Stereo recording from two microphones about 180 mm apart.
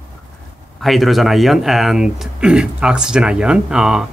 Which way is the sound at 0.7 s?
Centre (ahead or behind).